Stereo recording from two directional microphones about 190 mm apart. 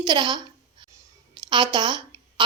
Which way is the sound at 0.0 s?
20° right (ahead or behind).